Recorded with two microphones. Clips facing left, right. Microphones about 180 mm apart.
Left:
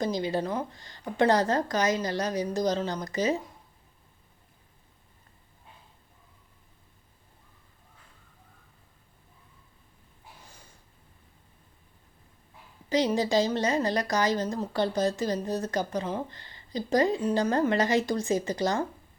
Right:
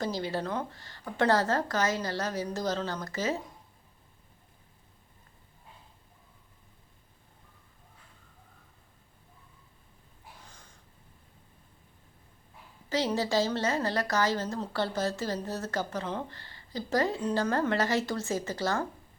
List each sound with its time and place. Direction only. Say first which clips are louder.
0.0 s a woman's voice: left 4 dB; 15° left (ahead or behind)
10.4 s gasp: left 1 dB; 10° left (ahead or behind)
12.9 s a woman's voice: left 4 dB; 15° left (ahead or behind)